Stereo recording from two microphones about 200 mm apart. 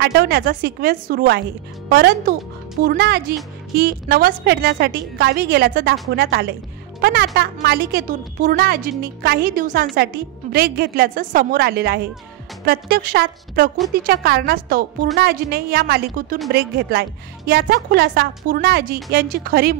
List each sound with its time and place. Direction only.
0.0 s a woman's voice: 50° right (ahead or behind)